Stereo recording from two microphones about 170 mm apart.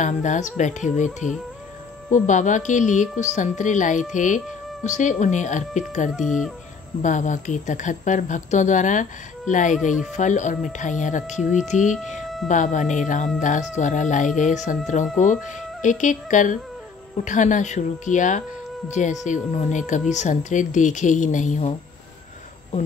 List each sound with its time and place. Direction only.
0.0 s speech: 45° left (ahead or behind)
6.1 s speech: centre (ahead or behind)
7.0 s speech: 50° left (ahead or behind)
12.0 s speech: centre (ahead or behind)
12.4 s speech: 45° left (ahead or behind)
15.8 s speech: 45° left (ahead or behind)